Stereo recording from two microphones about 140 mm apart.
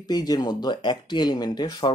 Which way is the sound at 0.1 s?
30° left (ahead or behind).